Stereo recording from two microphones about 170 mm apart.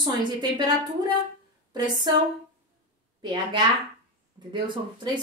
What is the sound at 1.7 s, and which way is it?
Speech, 25° right (ahead or behind).